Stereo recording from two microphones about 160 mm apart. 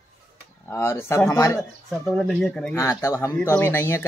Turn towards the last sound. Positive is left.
turn(degrees=15)  # may be behind; listen again after turning